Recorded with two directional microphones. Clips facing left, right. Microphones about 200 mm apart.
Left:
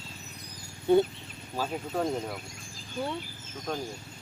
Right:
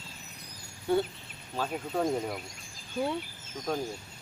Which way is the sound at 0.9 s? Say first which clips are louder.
Left 5 dB; 20° left (ahead or behind).